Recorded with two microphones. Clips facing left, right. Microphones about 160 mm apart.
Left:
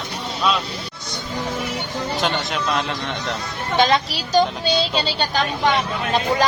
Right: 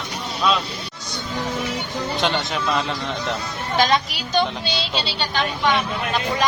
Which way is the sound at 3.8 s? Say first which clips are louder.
Left 1 dB; 30° left (ahead or behind).